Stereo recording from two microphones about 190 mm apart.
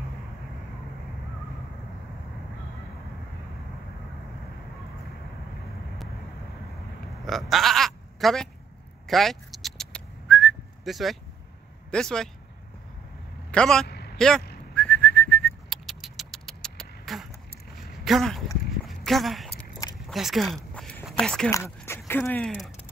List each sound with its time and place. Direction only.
7.2 s sheep: centre (ahead or behind)
9.0 s whistling: centre (ahead or behind)
11.9 s speech: 5° left (ahead or behind)
13.5 s a man's voice: 5° left (ahead or behind)
13.8 s a sound: 60° left (ahead or behind)
14.1 s speech: 5° left (ahead or behind)
14.8 s whistling: 5° left (ahead or behind)
18.0 s a sound: centre (ahead or behind)
21.5 s speech: 15° left (ahead or behind)